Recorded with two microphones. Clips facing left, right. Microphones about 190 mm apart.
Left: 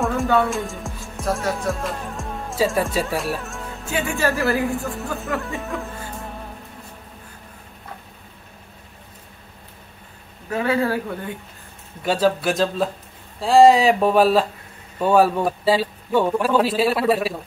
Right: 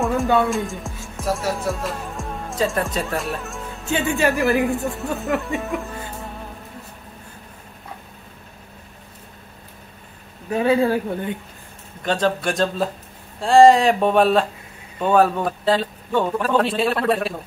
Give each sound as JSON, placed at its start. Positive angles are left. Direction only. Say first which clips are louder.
{"t": 0.5, "sound": "music", "louder": "right 2 dB", "side_deg": 0}
{"t": 3.9, "sound": "speech", "louder": "right 2 dB", "side_deg": -20}
{"t": 10.5, "sound": "speech", "louder": "right 3 dB", "side_deg": -20}
{"t": 12.0, "sound": "a man's voice", "louder": "left 2 dB", "side_deg": 5}